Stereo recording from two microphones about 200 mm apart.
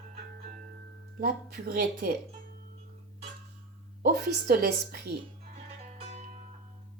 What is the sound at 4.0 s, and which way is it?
A woman's voice, 50° right (ahead or behind).